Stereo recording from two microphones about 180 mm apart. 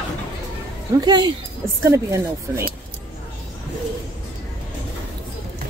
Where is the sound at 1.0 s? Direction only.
25° right (ahead or behind).